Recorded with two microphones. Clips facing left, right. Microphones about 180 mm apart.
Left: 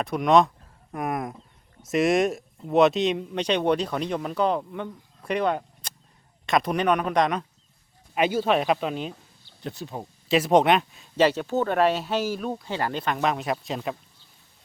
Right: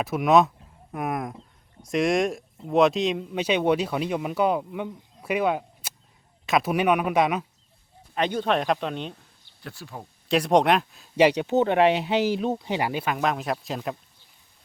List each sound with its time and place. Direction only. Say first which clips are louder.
0.0 s speech: even; 5° right (ahead or behind)
8.1 s speech: left 2 dB; 5° left (ahead or behind)
9.6 s speech: left 5 dB; 20° left (ahead or behind)
10.2 s speech: left 1 dB; centre (ahead or behind)
11.2 s speech: right 2 dB; 15° right (ahead or behind); by 13.9 s centre (ahead or behind)